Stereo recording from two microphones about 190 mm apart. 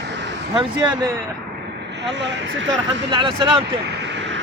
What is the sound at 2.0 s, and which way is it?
Speech, 70° right (ahead or behind).